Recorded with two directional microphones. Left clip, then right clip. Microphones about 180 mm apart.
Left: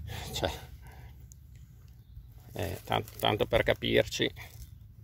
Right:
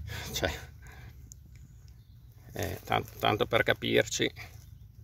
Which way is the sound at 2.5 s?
Centre (ahead or behind).